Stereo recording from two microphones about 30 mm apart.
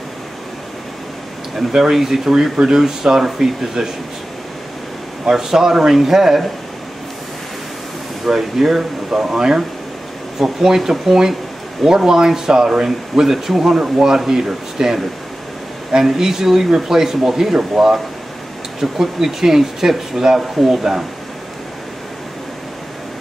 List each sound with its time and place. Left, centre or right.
1.7 s speech: centre
5.3 s speech: centre
8.3 s speech: centre